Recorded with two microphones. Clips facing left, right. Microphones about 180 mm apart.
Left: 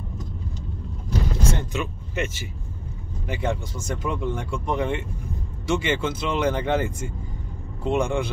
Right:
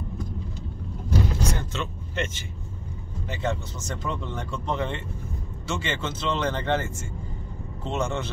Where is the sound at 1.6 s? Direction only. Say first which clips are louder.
Left 3 dB; 15° left (ahead or behind).